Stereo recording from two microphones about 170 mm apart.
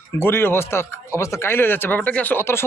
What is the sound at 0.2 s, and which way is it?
Speech, 15° left (ahead or behind).